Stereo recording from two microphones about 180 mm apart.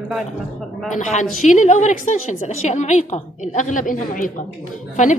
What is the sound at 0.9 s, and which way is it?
A woman's voice, 45° left (ahead or behind).